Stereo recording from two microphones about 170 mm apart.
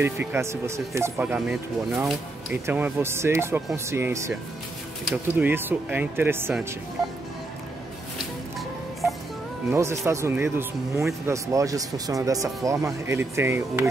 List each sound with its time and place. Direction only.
0.0 s speech: 10° right (ahead or behind)
9.7 s speech: 15° right (ahead or behind)